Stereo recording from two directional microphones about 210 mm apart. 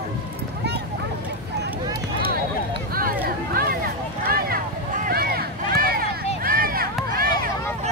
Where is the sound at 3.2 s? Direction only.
45° right (ahead or behind).